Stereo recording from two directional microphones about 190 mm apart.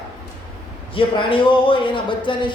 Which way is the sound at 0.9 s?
25° left (ahead or behind).